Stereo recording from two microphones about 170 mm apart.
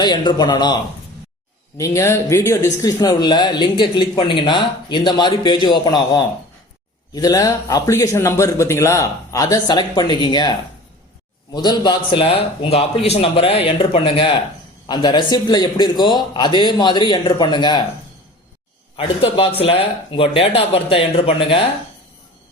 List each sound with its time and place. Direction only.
0.0 s speech: 25° left (ahead or behind)
1.8 s speech: 15° left (ahead or behind)
18.9 s speech: 30° left (ahead or behind)